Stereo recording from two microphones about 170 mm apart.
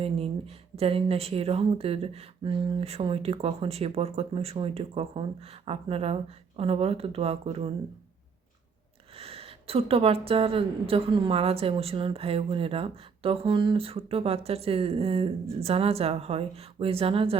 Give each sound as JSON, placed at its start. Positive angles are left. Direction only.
{"t": 0.0, "sound": "a woman's voice", "side_deg": -35}
{"t": 9.1, "sound": "a woman's voice", "side_deg": -35}